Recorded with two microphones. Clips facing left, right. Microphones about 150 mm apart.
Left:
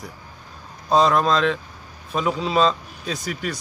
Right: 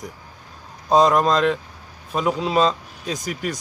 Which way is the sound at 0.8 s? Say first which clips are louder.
Right 2 dB; 15° right (ahead or behind).